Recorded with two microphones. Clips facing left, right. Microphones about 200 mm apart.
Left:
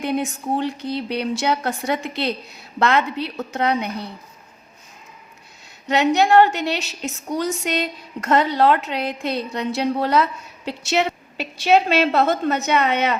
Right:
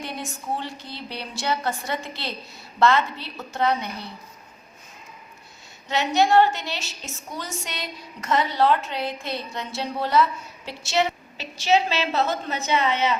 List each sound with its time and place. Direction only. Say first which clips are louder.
0.0 s a woman's voice: left 10 dB; 60° left (ahead or behind)
5.9 s a woman's voice: left 4 dB; 60° left (ahead or behind)